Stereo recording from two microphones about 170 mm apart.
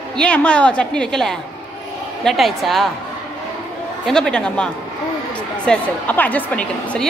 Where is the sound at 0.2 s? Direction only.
5° left (ahead or behind).